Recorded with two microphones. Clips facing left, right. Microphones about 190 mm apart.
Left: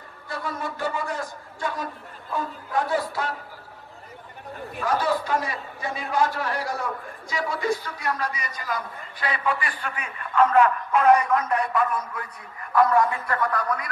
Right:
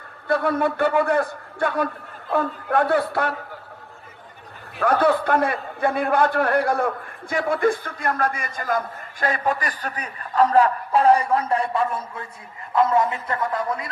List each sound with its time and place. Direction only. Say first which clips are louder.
0.3 s a man's voice: right 11 dB; 60° right (ahead or behind)
4.7 s a man's voice: right 6 dB; 60° right (ahead or behind); by 13.8 s 25° right (ahead or behind)